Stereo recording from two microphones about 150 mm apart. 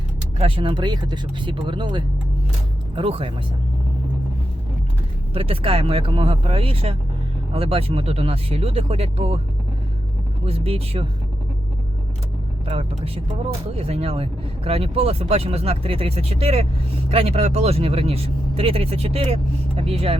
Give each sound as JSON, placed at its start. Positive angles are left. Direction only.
{"t": 0.3, "sound": "speech", "side_deg": -35}
{"t": 5.3, "sound": "speech", "side_deg": -40}
{"t": 10.4, "sound": "speech", "side_deg": -40}
{"t": 13.7, "sound": "speech", "side_deg": -40}